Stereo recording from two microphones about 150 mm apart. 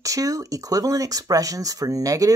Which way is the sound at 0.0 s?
20° right (ahead or behind).